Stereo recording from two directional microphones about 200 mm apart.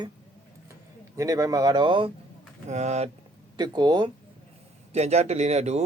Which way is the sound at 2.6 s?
35° right (ahead or behind).